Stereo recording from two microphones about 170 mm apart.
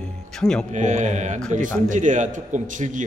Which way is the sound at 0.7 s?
45° right (ahead or behind).